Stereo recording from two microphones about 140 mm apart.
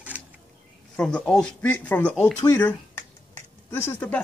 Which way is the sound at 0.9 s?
5° left (ahead or behind).